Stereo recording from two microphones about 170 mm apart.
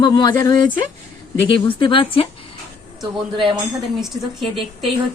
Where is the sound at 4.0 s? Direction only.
Centre (ahead or behind).